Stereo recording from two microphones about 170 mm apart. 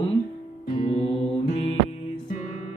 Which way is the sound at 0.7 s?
30° left (ahead or behind).